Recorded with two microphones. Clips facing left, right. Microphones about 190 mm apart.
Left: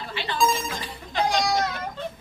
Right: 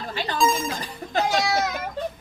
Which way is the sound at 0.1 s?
45° right (ahead or behind).